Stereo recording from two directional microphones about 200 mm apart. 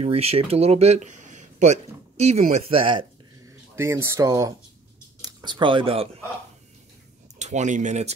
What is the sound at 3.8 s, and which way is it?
Speech, 10° right (ahead or behind).